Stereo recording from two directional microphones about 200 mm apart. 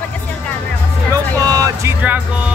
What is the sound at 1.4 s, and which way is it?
Music, 20° right (ahead or behind).